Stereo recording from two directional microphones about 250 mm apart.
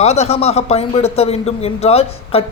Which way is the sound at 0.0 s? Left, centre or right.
Left.